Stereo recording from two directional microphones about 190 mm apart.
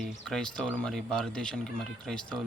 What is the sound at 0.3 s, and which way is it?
Speech, 5° left (ahead or behind).